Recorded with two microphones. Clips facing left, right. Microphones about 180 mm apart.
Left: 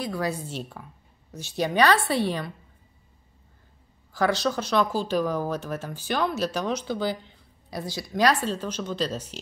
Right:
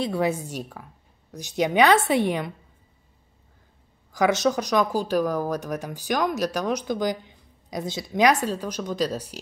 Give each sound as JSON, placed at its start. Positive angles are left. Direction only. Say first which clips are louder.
{"t": 0.0, "sound": "a woman's voice", "louder": "right 4 dB", "side_deg": -25}
{"t": 4.1, "sound": "speech", "louder": "right 3 dB", "side_deg": -20}